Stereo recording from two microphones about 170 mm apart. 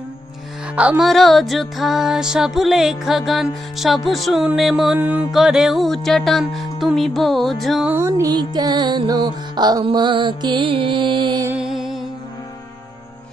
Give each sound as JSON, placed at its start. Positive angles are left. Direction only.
{"t": 0.7, "sound": "music", "side_deg": -5}
{"t": 7.9, "sound": "music", "side_deg": -15}
{"t": 11.4, "sound": "music", "side_deg": -5}